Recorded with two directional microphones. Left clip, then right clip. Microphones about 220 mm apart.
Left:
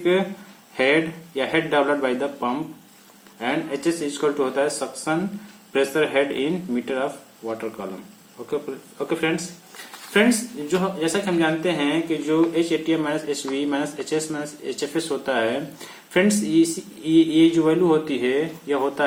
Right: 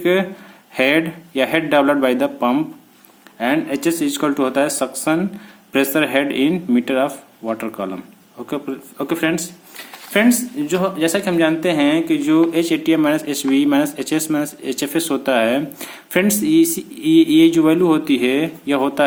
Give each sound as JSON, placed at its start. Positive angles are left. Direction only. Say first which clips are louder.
{"t": 0.0, "sound": "speech", "louder": "right 4 dB", "side_deg": -50}